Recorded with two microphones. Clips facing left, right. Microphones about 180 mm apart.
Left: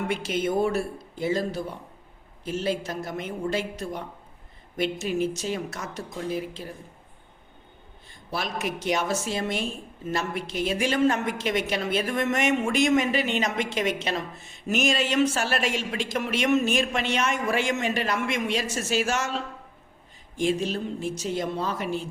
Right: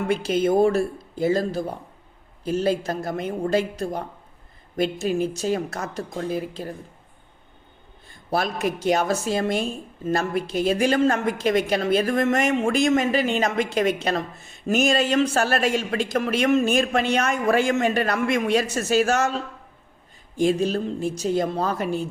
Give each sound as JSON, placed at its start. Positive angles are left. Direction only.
{"t": 0.1, "sound": "speech", "side_deg": -40}
{"t": 5.7, "sound": "speech", "side_deg": -55}
{"t": 8.3, "sound": "speech", "side_deg": -50}
{"t": 18.8, "sound": "speech", "side_deg": -40}
{"t": 20.5, "sound": "speech", "side_deg": -40}